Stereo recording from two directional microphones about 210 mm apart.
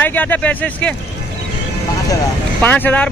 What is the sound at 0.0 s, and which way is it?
Speech, 10° left (ahead or behind).